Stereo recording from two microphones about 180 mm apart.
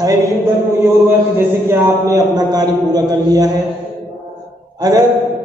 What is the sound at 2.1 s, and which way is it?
A man's voice, 20° right (ahead or behind).